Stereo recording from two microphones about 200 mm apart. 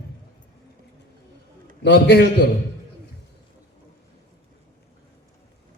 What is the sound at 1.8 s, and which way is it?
Speech, 60° left (ahead or behind).